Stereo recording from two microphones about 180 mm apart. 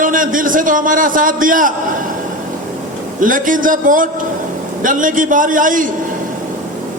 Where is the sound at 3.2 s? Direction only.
50° right (ahead or behind).